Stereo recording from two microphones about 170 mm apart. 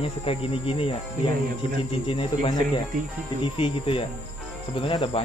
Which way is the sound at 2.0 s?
30° left (ahead or behind).